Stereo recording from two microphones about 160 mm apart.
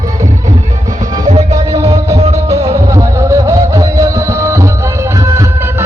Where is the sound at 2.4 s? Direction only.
20° right (ahead or behind).